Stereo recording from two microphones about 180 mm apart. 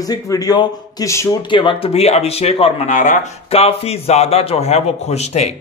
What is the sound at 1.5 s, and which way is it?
Speech, 30° left (ahead or behind).